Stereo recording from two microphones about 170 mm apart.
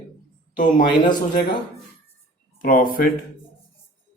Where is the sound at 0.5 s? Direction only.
50° left (ahead or behind).